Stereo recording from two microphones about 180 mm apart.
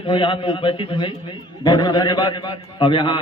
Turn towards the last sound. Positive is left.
turn(degrees=25)  # may be behind; listen again after turning